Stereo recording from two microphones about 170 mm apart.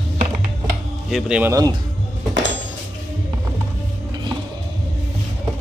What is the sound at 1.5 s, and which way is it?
Speech, 20° right (ahead or behind).